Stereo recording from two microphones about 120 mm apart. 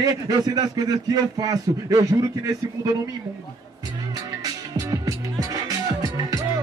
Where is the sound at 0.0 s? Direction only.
35° right (ahead or behind).